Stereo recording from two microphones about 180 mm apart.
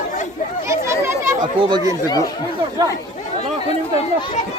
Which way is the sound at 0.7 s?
15° right (ahead or behind).